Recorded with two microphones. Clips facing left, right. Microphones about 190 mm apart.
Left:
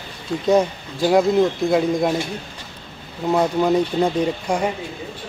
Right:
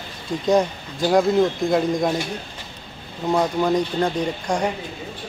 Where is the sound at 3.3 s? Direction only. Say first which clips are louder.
Left 2 dB; 10° left (ahead or behind).